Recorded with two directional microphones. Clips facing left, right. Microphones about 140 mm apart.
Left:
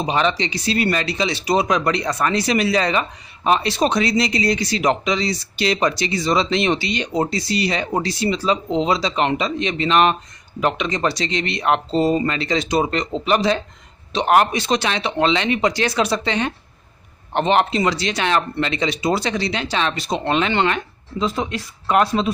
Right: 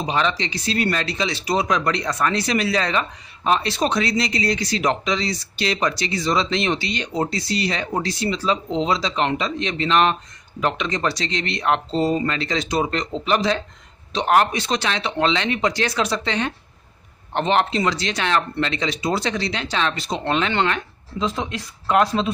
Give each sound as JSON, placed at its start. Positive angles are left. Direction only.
{"t": 0.0, "sound": "speech", "side_deg": 20}